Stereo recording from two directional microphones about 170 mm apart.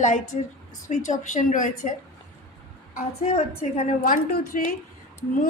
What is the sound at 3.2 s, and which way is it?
Speech, 40° left (ahead or behind).